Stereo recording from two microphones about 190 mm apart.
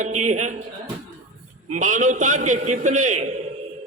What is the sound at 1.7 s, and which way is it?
A man's voice, 40° right (ahead or behind).